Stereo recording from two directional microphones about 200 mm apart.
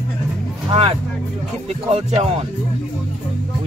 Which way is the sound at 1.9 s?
30° right (ahead or behind).